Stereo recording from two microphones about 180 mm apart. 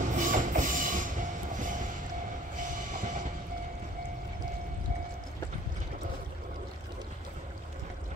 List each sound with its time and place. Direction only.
0.0 s train: 45° right (ahead or behind)